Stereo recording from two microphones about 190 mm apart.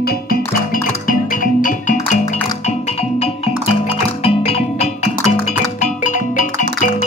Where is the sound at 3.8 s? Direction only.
30° left (ahead or behind).